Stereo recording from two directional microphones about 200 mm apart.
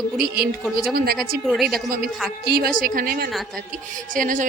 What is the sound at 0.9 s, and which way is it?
Speech, 50° right (ahead or behind).